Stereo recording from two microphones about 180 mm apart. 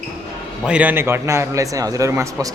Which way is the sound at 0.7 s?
10° right (ahead or behind).